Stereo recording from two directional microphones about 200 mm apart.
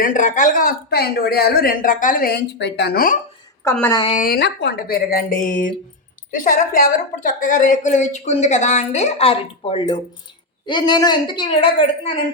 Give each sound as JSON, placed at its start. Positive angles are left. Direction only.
{"t": 0.0, "sound": "speech", "side_deg": 40}
{"t": 3.6, "sound": "a woman's voice", "side_deg": 10}
{"t": 4.0, "sound": "a woman's voice", "side_deg": 35}
{"t": 4.3, "sound": "a woman's voice", "side_deg": 55}